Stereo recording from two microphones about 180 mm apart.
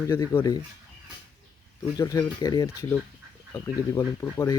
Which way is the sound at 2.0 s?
20° left (ahead or behind).